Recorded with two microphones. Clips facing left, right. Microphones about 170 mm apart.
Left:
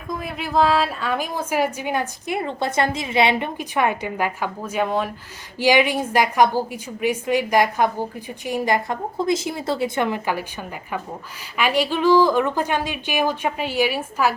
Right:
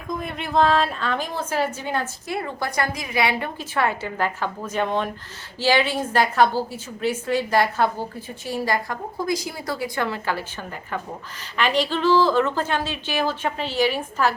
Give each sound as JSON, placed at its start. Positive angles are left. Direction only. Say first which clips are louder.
{"t": 0.1, "sound": "a woman's voice", "louder": "left 1 dB", "side_deg": 5}